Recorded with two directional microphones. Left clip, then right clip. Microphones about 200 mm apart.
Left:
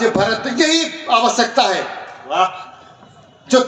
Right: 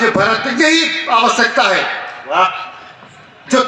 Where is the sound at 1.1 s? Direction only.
40° right (ahead or behind).